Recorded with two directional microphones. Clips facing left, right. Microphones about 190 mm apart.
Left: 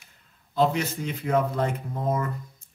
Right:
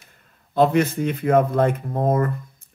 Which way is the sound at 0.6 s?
55° right (ahead or behind).